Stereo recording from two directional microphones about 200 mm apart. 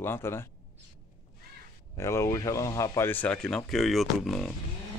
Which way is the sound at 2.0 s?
15° left (ahead or behind).